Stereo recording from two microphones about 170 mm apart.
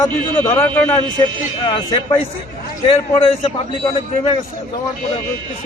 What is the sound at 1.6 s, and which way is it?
A man's voice, 30° left (ahead or behind).